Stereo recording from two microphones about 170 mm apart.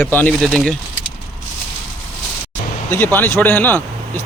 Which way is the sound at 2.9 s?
10° left (ahead or behind).